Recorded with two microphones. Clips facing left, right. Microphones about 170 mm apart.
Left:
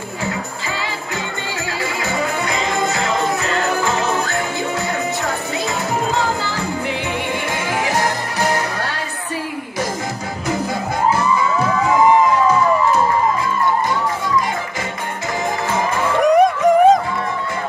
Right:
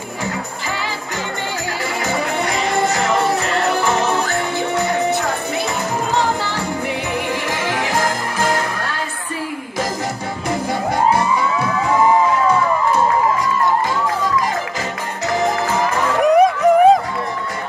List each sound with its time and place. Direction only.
2.0 s music: 35° right (ahead or behind)
3.3 s jingle bell: 35° right (ahead or behind)
6.1 s music: 35° right (ahead or behind)
16.2 s music: centre (ahead or behind)